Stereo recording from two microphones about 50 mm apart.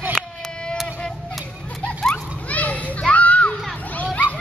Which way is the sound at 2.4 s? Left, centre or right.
Left.